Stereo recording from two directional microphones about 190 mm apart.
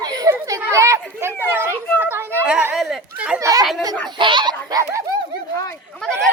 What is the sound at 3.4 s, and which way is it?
Speech, 20° right (ahead or behind).